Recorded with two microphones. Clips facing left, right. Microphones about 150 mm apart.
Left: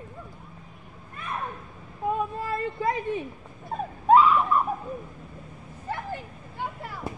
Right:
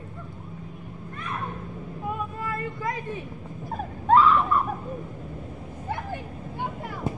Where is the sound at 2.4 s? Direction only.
25° left (ahead or behind).